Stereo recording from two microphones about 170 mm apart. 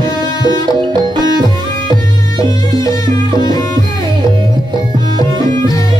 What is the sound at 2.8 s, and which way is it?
Music, 20° left (ahead or behind).